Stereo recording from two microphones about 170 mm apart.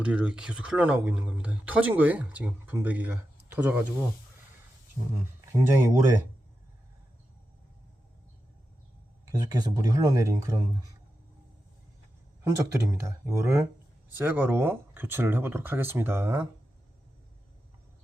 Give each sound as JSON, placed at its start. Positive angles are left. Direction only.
{"t": 0.0, "sound": "speech", "side_deg": -5}
{"t": 5.5, "sound": "speech", "side_deg": -15}
{"t": 9.4, "sound": "speech", "side_deg": -20}
{"t": 12.4, "sound": "a sound", "side_deg": -15}
{"t": 12.7, "sound": "speech", "side_deg": -15}